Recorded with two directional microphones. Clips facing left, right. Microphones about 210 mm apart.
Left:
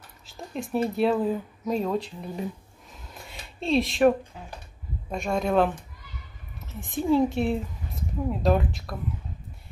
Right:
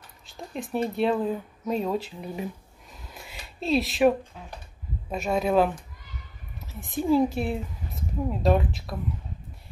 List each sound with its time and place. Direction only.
0.3 s speech: centre (ahead or behind)
3.1 s a sound: centre (ahead or behind)
5.1 s speech: 5° right (ahead or behind)